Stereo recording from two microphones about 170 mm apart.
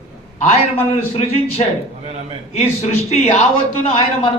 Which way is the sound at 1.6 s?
35° left (ahead or behind).